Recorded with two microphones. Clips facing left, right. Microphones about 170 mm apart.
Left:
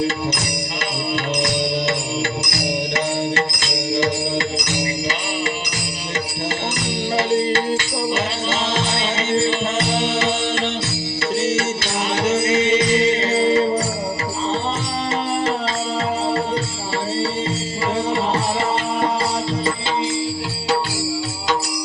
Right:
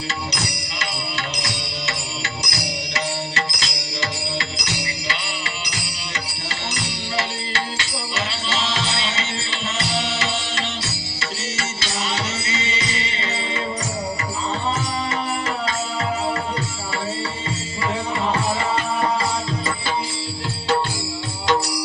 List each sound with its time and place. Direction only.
2.5 s music: 55° left (ahead or behind)
7.2 s music: 50° left (ahead or behind)
11.5 s music: 55° left (ahead or behind)